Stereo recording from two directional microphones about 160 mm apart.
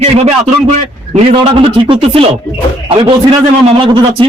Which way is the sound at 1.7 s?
30° right (ahead or behind).